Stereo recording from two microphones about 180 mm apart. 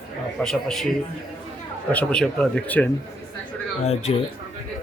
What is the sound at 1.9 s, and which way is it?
Speech, 5° left (ahead or behind).